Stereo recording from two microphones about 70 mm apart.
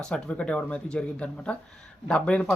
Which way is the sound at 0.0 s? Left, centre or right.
Centre.